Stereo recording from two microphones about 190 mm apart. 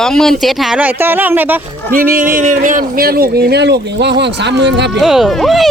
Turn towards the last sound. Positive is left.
turn(degrees=0)  # may be behind; listen again after turning